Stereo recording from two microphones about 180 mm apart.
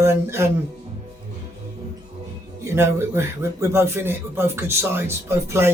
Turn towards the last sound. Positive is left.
turn(degrees=-15)  # may be behind; listen again after turning